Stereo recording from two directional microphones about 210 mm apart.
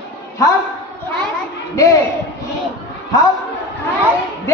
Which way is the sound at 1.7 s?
15° left (ahead or behind).